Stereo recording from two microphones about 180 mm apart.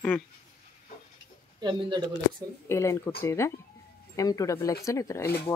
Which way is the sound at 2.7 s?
15° left (ahead or behind).